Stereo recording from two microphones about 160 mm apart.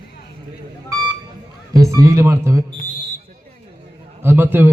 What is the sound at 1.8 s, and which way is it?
Speech, 20° right (ahead or behind).